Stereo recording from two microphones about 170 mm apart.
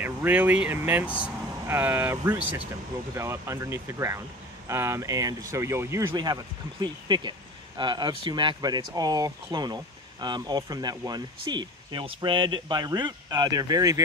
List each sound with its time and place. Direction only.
0.0 s speech: 10° right (ahead or behind)